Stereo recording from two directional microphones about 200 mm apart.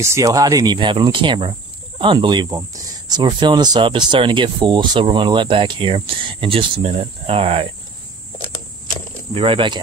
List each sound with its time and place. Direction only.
0.0 s speech: 15° right (ahead or behind)
9.3 s speech: 25° right (ahead or behind)